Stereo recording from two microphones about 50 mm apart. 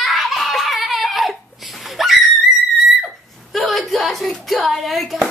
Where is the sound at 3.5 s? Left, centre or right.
Centre.